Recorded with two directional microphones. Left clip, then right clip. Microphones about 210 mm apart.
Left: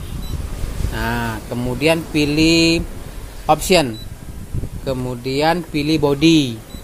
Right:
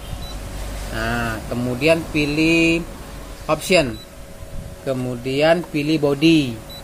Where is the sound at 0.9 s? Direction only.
35° left (ahead or behind).